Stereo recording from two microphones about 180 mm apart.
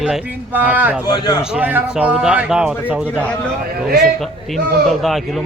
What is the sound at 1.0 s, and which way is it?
Speech, 20° left (ahead or behind).